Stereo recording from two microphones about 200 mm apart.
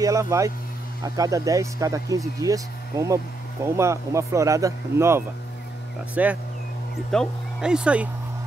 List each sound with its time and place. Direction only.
0.0 s speech: 15° right (ahead or behind)